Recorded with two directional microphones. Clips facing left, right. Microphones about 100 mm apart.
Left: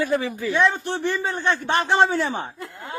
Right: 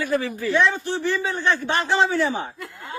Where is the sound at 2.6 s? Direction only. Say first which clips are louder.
Left 1 dB; 25° left (ahead or behind).